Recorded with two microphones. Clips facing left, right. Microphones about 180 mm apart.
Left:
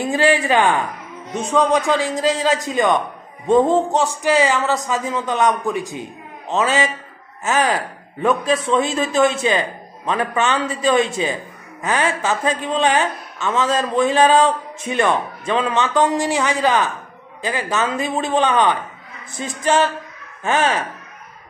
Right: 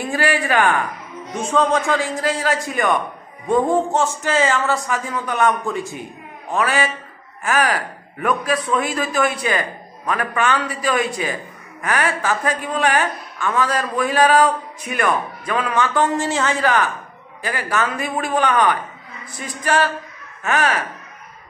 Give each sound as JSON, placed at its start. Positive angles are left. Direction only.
{"t": 0.0, "sound": "a woman's voice", "side_deg": 20}
{"t": 4.2, "sound": "a sound", "side_deg": 15}
{"t": 4.8, "sound": "a woman's voice", "side_deg": 20}